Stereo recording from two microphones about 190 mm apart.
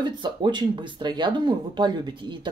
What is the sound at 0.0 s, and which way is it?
Speech, 25° right (ahead or behind).